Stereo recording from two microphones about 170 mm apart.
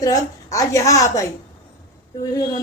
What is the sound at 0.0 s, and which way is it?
A woman's voice, 20° left (ahead or behind).